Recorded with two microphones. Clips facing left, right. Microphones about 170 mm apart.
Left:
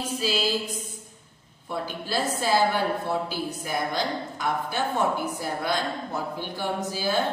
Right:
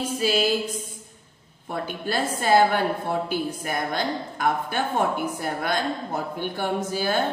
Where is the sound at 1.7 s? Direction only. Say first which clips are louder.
Right 2 dB; 50° right (ahead or behind).